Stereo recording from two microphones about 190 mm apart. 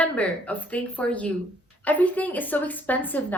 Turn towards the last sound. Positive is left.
turn(degrees=10)  # may be behind; listen again after turning